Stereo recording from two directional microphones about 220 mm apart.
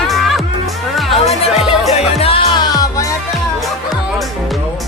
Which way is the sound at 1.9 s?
25° left (ahead or behind).